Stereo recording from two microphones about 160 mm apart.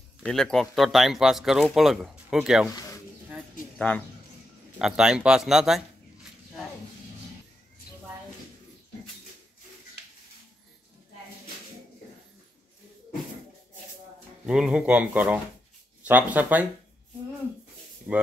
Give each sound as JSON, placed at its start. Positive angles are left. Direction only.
{"t": 0.2, "sound": "speech", "side_deg": 0}
{"t": 3.7, "sound": "speech", "side_deg": 5}
{"t": 4.7, "sound": "speech", "side_deg": -5}
{"t": 14.4, "sound": "speech", "side_deg": -5}
{"t": 18.1, "sound": "speech", "side_deg": -15}